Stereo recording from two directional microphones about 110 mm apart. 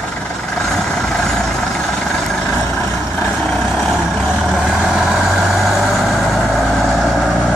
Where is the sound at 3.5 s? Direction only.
Centre (ahead or behind).